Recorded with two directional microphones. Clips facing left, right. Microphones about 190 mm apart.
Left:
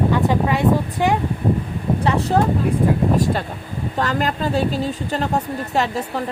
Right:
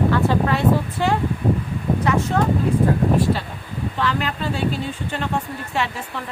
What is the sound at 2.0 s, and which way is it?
Speech, 35° left (ahead or behind).